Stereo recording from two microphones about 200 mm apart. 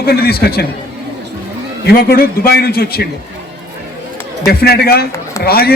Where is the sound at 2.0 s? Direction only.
50° left (ahead or behind).